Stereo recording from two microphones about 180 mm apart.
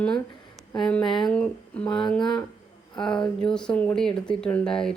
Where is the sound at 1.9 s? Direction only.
25° left (ahead or behind).